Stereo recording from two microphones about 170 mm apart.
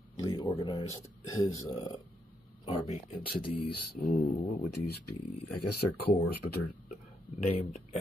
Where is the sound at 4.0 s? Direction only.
50° left (ahead or behind).